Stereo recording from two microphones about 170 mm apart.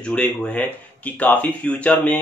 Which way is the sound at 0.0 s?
5° left (ahead or behind).